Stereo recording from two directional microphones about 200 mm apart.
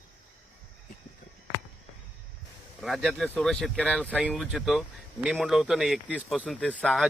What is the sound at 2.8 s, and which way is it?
Speech, centre (ahead or behind).